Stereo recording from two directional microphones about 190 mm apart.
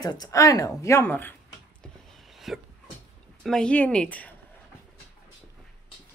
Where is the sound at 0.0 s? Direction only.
20° left (ahead or behind).